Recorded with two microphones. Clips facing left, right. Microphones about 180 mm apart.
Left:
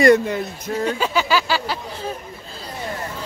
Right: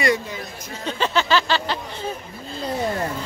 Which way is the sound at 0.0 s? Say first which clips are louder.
Left 8 dB; 60° left (ahead or behind).